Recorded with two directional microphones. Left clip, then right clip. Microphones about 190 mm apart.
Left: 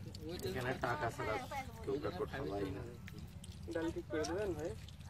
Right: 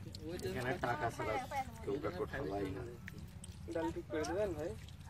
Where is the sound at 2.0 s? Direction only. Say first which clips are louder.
Right 1 dB; 25° right (ahead or behind).